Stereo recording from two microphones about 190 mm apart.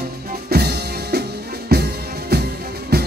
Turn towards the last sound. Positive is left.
turn(degrees=-55)  # may be behind; listen again after turning